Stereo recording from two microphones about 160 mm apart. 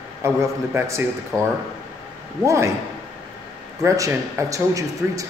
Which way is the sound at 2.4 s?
20° right (ahead or behind).